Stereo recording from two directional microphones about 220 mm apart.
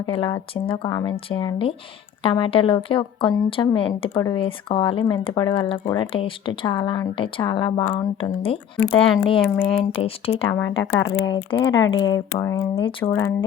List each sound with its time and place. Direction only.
0.0 s speech: 20° left (ahead or behind)